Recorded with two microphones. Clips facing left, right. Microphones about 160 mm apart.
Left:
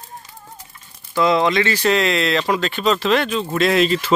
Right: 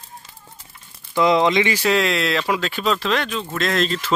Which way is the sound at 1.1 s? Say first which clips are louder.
Even; 20° right (ahead or behind).